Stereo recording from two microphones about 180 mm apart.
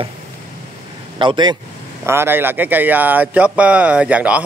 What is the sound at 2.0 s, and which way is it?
Speech, 10° right (ahead or behind).